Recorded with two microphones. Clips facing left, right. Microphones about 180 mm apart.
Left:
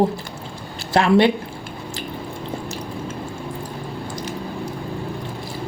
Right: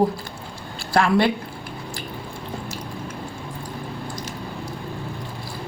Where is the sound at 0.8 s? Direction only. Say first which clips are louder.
Left 3 dB; 20° left (ahead or behind).